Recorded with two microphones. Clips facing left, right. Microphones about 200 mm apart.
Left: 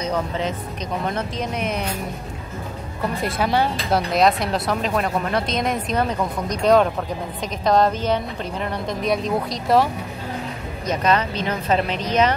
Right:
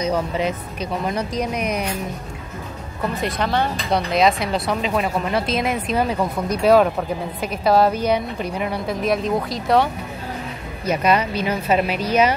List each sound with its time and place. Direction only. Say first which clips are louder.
0.0 s speech: right 3 dB; 10° right (ahead or behind)
1.3 s speech: right 2 dB; 25° left (ahead or behind)
3.3 s speech: left 4 dB; 10° left (ahead or behind)
10.9 s speech: right 2 dB; 10° right (ahead or behind)